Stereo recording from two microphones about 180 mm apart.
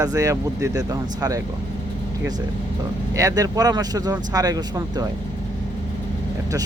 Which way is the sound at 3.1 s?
20° right (ahead or behind).